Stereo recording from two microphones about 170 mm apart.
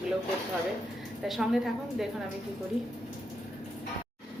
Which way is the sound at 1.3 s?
Centre (ahead or behind).